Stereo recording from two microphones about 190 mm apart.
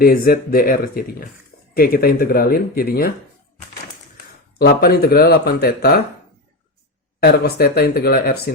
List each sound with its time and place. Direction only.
0.0 s speech: 50° left (ahead or behind)
4.5 s speech: 55° left (ahead or behind)
7.2 s speech: 55° left (ahead or behind)